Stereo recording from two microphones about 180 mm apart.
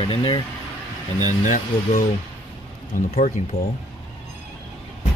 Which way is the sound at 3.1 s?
40° left (ahead or behind).